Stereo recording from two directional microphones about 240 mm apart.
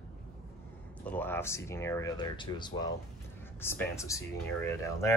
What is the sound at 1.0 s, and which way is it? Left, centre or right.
Speech, centre.